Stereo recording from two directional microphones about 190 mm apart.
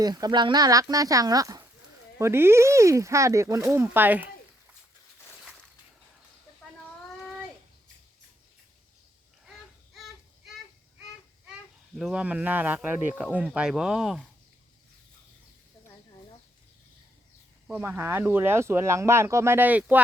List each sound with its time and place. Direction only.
0.0 s speech: 20° right (ahead or behind)
11.9 s speech: 5° right (ahead or behind)
17.7 s speech: 10° right (ahead or behind)